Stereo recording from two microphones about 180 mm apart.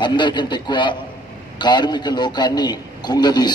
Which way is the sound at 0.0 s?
25° left (ahead or behind).